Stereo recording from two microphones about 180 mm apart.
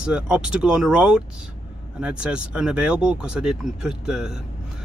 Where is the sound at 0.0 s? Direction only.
5° right (ahead or behind).